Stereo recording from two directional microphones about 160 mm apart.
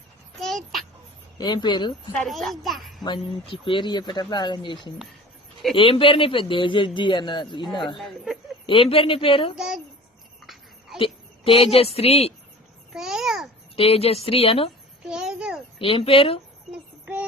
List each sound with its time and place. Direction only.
0.3 s a sound: centre (ahead or behind)
1.4 s speech: 30° left (ahead or behind)
2.1 s a child's voice: centre (ahead or behind)
3.0 s speech: 30° left (ahead or behind)
7.9 s a child's voice: centre (ahead or behind)
8.6 s speech: 35° left (ahead or behind)
9.6 s a child's voice: 5° right (ahead or behind)
10.4 s a sound: centre (ahead or behind)
10.9 s a woman's voice: 35° left (ahead or behind)
12.9 s babbling: 5° right (ahead or behind)
13.7 s speech: 35° left (ahead or behind)
15.0 s a sound: 5° right (ahead or behind)
15.8 s speech: 35° left (ahead or behind)
16.7 s child singing: 10° right (ahead or behind)